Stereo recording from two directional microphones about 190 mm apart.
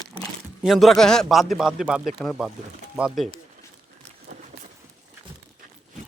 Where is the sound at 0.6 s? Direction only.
Centre (ahead or behind).